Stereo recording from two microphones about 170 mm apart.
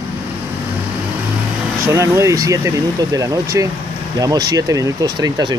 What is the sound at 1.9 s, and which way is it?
Speech, 15° right (ahead or behind).